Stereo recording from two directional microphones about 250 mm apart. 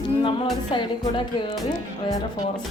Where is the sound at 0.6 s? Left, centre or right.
Centre.